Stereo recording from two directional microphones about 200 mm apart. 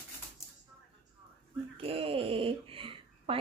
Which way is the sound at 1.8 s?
30° right (ahead or behind).